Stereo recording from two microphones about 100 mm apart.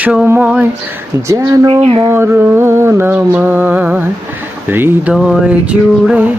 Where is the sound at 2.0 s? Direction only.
25° right (ahead or behind).